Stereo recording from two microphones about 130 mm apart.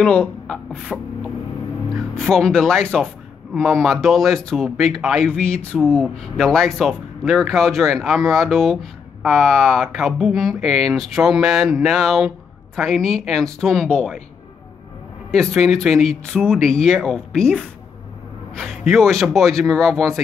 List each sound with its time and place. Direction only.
0.0 s speech: 5° left (ahead or behind)
15.3 s speech: centre (ahead or behind)